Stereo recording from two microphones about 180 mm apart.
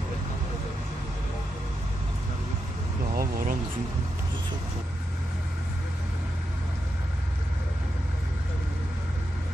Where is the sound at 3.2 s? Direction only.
55° right (ahead or behind).